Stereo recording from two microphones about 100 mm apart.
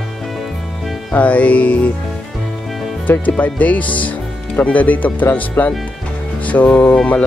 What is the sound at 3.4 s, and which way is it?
Speech, 15° left (ahead or behind).